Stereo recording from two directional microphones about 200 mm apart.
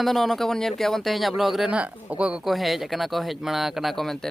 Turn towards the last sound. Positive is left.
turn(degrees=0)  # may be behind; listen again after turning